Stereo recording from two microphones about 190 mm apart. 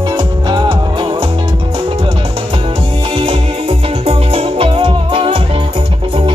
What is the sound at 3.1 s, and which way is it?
Music, 30° right (ahead or behind).